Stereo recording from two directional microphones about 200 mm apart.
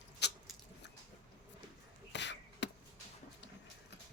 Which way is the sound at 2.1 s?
60° left (ahead or behind).